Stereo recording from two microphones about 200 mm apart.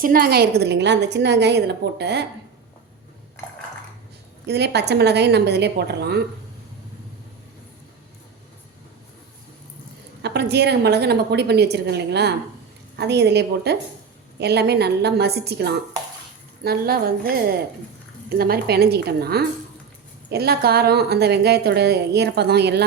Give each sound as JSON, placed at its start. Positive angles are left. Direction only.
{"t": 0.0, "sound": "a woman's voice", "side_deg": -45}
{"t": 4.4, "sound": "a woman's voice", "side_deg": -55}
{"t": 10.2, "sound": "a woman's voice", "side_deg": -55}
{"t": 18.3, "sound": "a woman's voice", "side_deg": -50}